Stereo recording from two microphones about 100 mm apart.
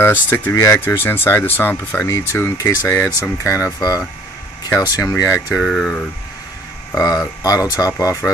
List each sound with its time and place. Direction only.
0.0 s speech: 20° left (ahead or behind)
4.6 s speech: 35° left (ahead or behind)
5.5 s speech: centre (ahead or behind)
7.4 s speech: 35° left (ahead or behind)